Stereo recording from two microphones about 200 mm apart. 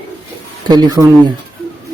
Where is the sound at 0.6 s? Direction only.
20° right (ahead or behind).